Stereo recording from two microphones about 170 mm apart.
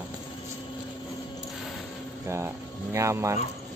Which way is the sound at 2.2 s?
15° right (ahead or behind).